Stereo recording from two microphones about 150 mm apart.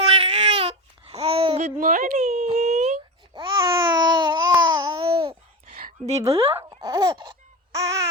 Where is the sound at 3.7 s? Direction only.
30° right (ahead or behind).